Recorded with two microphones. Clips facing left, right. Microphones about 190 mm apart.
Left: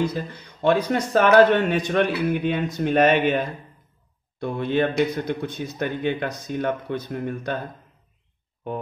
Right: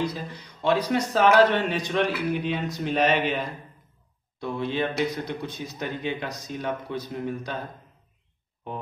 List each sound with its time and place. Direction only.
0.0 s speech: 50° left (ahead or behind)
4.4 s speech: 55° left (ahead or behind)